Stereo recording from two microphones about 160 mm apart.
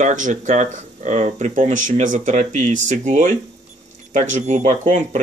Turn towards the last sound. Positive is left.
turn(degrees=-50)  # may be behind; listen again after turning